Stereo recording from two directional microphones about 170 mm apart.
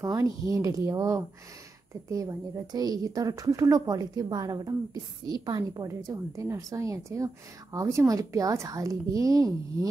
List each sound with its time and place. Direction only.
0.0 s a woman's voice: 20° right (ahead or behind)